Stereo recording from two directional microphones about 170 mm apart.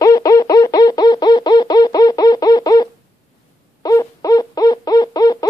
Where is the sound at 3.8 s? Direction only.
20° left (ahead or behind).